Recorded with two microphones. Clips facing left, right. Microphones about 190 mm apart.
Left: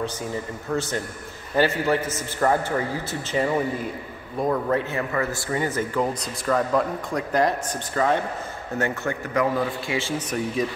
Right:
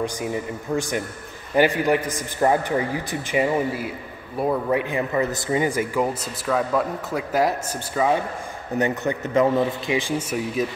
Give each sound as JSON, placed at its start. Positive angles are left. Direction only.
{"t": 0.0, "sound": "a man's voice", "side_deg": -15}